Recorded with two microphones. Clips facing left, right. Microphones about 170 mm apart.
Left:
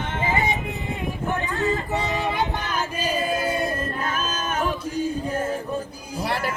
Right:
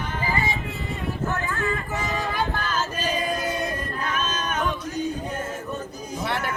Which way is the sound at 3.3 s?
30° left (ahead or behind).